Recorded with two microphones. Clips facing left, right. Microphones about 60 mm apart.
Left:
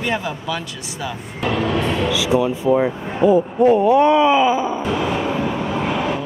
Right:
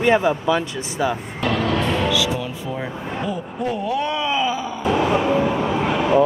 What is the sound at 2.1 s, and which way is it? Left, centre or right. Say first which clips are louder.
Speech: left 5 dB; left.